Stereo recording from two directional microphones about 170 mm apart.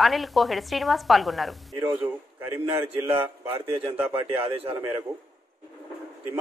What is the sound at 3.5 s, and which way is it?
A man's voice, 35° right (ahead or behind).